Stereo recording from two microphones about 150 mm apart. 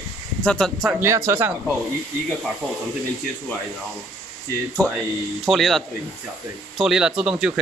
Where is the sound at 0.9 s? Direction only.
15° right (ahead or behind).